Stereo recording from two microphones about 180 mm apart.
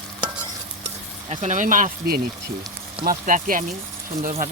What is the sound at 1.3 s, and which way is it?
Speech, 40° right (ahead or behind).